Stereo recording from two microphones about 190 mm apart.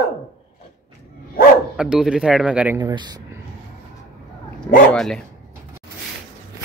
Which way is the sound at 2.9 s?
20° right (ahead or behind).